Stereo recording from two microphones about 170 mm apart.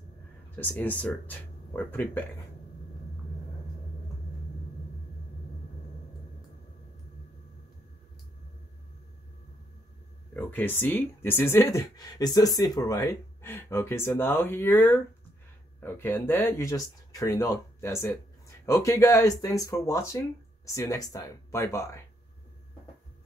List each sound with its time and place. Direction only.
0.6 s speech: 10° left (ahead or behind)
10.3 s speech: 10° left (ahead or behind)